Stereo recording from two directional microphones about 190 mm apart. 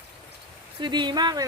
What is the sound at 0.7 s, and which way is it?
Speech, 25° right (ahead or behind).